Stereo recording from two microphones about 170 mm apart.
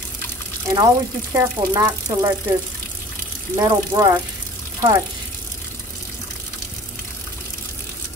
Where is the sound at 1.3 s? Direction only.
15° right (ahead or behind).